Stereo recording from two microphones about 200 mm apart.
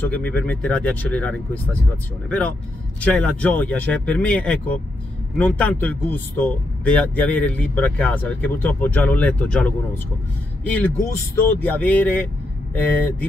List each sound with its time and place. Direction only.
0.0 s speech: 10° left (ahead or behind)